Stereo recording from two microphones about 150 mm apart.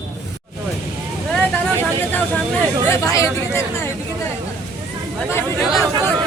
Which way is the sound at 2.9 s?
20° left (ahead or behind).